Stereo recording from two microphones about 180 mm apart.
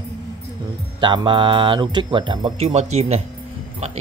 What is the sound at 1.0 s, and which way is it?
Speech, 25° right (ahead or behind).